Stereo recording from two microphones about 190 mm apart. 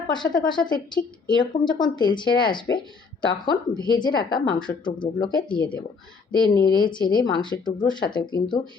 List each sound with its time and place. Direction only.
0.1 s speech: 20° left (ahead or behind)